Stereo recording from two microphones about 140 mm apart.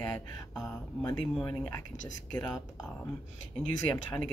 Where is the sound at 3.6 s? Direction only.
15° left (ahead or behind).